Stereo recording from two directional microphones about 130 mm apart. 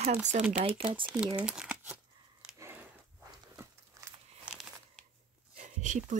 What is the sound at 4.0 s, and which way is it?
Crumpling, 25° right (ahead or behind).